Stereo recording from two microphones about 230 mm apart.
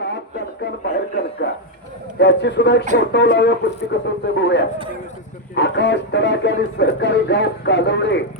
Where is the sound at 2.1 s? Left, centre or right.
Left.